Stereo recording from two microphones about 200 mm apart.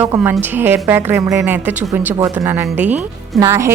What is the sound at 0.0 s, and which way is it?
A woman's voice, 10° right (ahead or behind).